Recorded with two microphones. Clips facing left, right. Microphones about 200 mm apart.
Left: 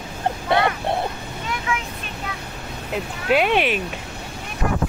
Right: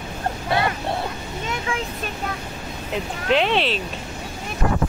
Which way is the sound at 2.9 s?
10° left (ahead or behind).